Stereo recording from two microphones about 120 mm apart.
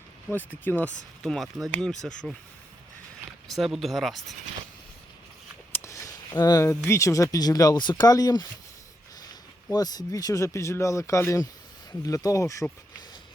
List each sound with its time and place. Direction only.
0.3 s speech: 15° left (ahead or behind)
1.2 s speech: 5° left (ahead or behind)
3.5 s speech: centre (ahead or behind)
5.7 s speech: 25° left (ahead or behind)